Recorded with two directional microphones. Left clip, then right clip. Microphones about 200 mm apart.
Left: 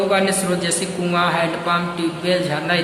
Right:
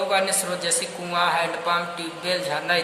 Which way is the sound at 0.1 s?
25° right (ahead or behind).